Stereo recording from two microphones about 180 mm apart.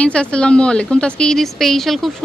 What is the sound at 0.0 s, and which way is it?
Speech, 5° left (ahead or behind).